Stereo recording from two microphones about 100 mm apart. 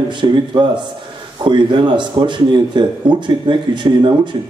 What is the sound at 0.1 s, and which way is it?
Speech, 50° right (ahead or behind).